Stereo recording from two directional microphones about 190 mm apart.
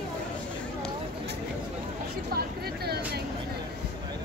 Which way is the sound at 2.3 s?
55° right (ahead or behind).